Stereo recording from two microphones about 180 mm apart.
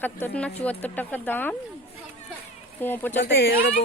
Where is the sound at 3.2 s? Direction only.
55° left (ahead or behind).